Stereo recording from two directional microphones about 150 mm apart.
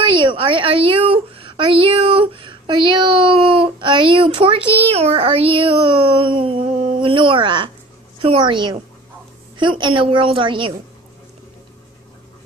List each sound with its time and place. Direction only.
0.0 s a woman's voice: 35° right (ahead or behind)